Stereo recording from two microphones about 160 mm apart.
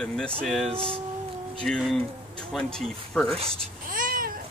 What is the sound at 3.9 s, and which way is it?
Cat, 60° right (ahead or behind).